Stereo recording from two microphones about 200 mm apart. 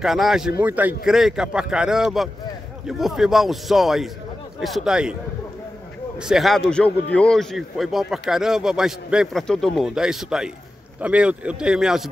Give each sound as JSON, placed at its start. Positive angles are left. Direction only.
{"t": 0.0, "sound": "speech", "side_deg": 0}
{"t": 6.1, "sound": "speech", "side_deg": 0}